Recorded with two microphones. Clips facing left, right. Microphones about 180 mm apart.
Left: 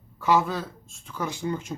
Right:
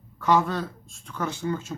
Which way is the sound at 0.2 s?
5° left (ahead or behind).